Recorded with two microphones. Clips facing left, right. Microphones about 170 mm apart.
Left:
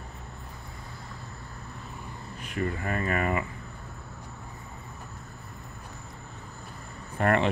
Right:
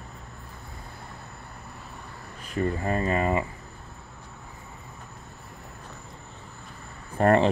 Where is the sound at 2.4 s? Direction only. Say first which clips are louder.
Right 4 dB; 30° right (ahead or behind).